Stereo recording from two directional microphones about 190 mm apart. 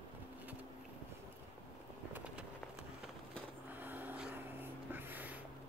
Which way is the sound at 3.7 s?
10° right (ahead or behind).